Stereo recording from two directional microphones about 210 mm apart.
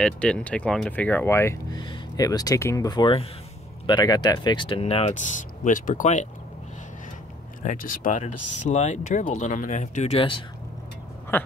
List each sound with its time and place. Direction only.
0.0 s speech: 5° left (ahead or behind); by 6.2 s 35° left (ahead or behind)
7.6 s speech: 40° left (ahead or behind)
11.3 s speech: 10° left (ahead or behind)